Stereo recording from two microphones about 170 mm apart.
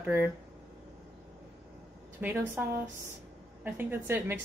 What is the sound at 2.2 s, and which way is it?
A woman's voice, 15° right (ahead or behind).